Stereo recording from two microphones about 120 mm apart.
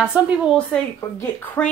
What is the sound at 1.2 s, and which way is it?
Speech, 15° left (ahead or behind).